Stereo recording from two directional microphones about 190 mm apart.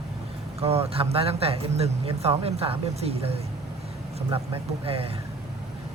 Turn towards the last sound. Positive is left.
turn(degrees=-30)  # may be behind; listen again after turning